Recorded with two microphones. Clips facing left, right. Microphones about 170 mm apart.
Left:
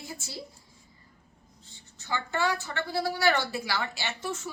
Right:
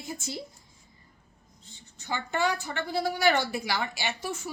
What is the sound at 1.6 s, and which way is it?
A woman's voice, 20° right (ahead or behind).